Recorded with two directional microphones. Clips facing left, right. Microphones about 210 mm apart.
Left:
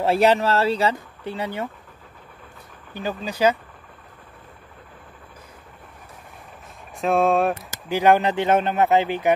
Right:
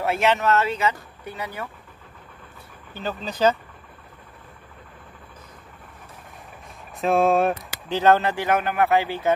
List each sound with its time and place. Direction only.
0.0 s speech: 35° left (ahead or behind)
2.9 s speech: 15° left (ahead or behind)
7.0 s speech: centre (ahead or behind)
7.9 s a man's voice: 15° left (ahead or behind)